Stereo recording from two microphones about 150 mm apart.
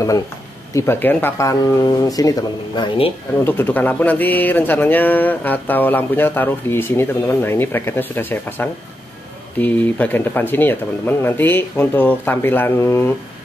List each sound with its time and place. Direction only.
0.7 s speech: 15° left (ahead or behind)
3.4 s speech: 15° left (ahead or behind)